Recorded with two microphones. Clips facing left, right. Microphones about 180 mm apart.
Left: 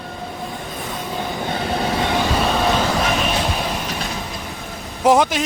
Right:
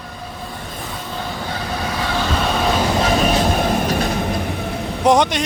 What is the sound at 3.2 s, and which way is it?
Train, 50° right (ahead or behind).